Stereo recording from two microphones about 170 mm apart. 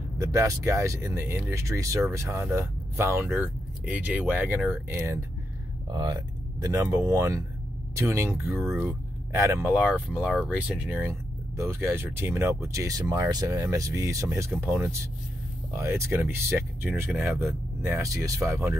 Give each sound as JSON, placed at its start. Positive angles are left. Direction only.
{"t": 0.2, "sound": "speech", "side_deg": -20}